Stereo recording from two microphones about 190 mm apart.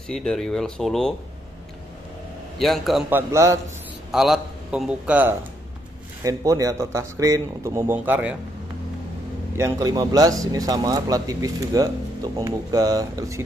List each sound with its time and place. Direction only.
0.1 s a man's voice: 5° left (ahead or behind)
2.6 s speech: centre (ahead or behind); by 3.5 s 15° right (ahead or behind)
4.1 s a man's voice: 5° right (ahead or behind)
9.6 s speech: 15° right (ahead or behind)